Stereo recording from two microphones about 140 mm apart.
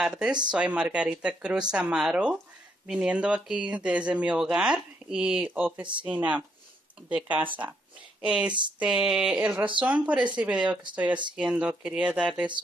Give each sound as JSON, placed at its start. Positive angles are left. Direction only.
{"t": 0.0, "sound": "speech", "side_deg": -5}